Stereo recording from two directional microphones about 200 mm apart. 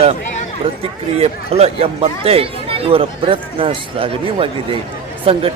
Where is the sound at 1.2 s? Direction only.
30° right (ahead or behind).